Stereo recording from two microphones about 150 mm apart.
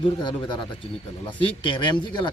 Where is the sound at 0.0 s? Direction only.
30° left (ahead or behind).